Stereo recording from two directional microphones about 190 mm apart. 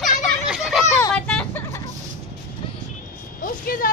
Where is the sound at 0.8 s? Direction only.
10° left (ahead or behind).